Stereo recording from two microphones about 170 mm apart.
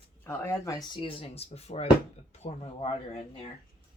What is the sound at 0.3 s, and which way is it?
Speech, 15° left (ahead or behind).